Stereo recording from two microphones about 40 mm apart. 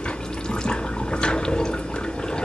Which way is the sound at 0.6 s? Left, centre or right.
Left.